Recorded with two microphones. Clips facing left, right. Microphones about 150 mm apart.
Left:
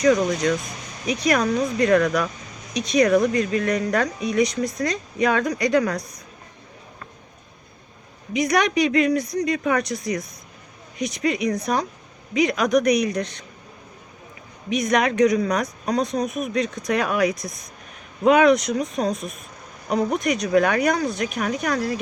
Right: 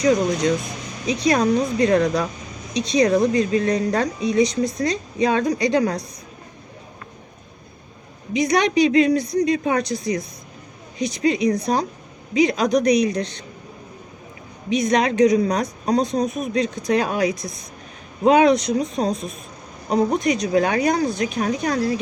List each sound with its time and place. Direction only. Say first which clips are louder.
0.0 s speech: even; 25° right (ahead or behind)
8.3 s speech: right 2 dB; 30° right (ahead or behind)
14.7 s speech: right 2 dB; 30° right (ahead or behind)